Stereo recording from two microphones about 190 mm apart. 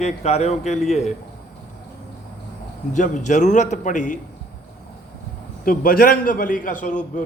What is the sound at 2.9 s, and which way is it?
A man's voice, 40° left (ahead or behind).